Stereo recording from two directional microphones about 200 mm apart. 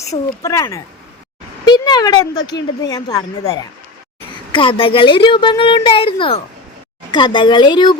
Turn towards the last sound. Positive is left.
turn(degrees=20)  # may be behind; listen again after turning